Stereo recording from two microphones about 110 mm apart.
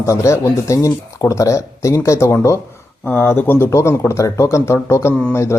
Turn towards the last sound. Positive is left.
turn(degrees=25)  # may be behind; listen again after turning